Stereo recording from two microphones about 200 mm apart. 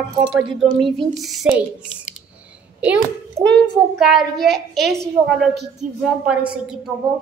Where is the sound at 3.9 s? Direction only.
Centre (ahead or behind).